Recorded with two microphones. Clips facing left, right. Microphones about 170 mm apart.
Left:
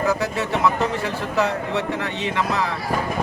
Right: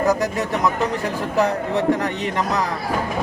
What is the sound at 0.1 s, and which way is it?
Speech, 40° right (ahead or behind).